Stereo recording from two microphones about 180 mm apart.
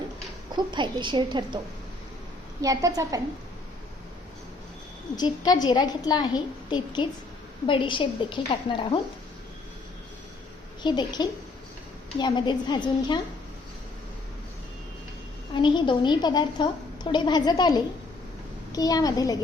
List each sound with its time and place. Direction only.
0.5 s a woman's voice: 25° right (ahead or behind)
5.1 s a woman's voice: 20° left (ahead or behind)
10.8 s a woman's voice: 25° left (ahead or behind)
15.5 s a woman's voice: 25° left (ahead or behind)